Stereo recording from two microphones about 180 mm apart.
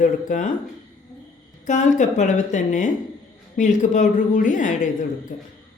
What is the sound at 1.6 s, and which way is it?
Speech, 45° left (ahead or behind).